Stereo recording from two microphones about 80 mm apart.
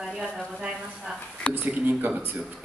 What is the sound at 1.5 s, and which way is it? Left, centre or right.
Speech, centre.